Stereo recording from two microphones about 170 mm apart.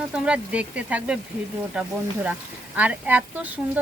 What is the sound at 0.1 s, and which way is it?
A woman's voice, 5° right (ahead or behind).